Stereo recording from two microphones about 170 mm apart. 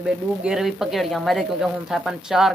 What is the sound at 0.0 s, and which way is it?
Speech, 5° right (ahead or behind).